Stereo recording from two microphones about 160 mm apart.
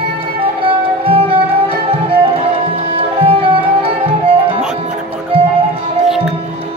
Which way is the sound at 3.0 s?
35° right (ahead or behind).